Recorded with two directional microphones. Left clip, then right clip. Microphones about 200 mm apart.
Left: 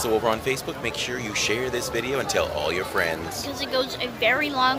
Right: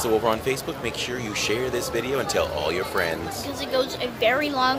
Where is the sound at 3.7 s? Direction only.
15° right (ahead or behind).